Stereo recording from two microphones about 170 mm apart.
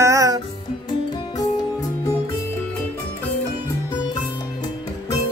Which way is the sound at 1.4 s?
20° left (ahead or behind).